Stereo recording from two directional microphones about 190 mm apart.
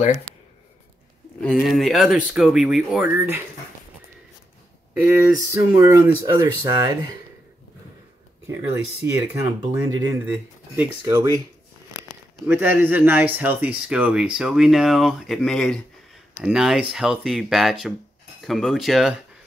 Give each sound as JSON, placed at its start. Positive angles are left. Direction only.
{"t": 1.4, "sound": "speech", "side_deg": 0}
{"t": 4.9, "sound": "speech", "side_deg": -10}
{"t": 6.2, "sound": "speech", "side_deg": -25}
{"t": 9.0, "sound": "speech", "side_deg": -15}
{"t": 12.4, "sound": "speech", "side_deg": -10}